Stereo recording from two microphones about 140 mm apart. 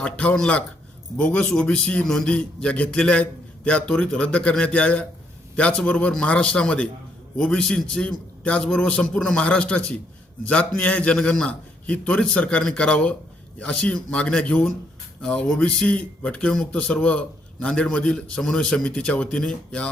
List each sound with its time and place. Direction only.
0.0 s speech: 10° left (ahead or behind)